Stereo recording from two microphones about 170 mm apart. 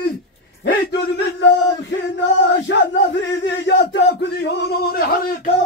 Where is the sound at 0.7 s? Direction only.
65° left (ahead or behind).